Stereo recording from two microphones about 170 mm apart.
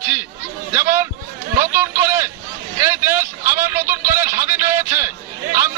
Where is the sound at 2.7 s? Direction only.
15° right (ahead or behind).